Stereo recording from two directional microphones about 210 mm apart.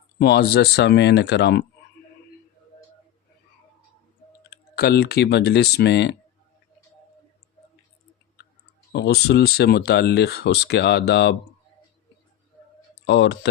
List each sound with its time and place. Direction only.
0.2 s speech: 50° left (ahead or behind)
4.4 s speech: 50° left (ahead or behind)
8.9 s speech: 50° left (ahead or behind)
13.1 s speech: 55° left (ahead or behind)